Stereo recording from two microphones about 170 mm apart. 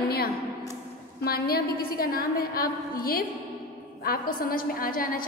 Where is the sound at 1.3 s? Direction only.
65° left (ahead or behind).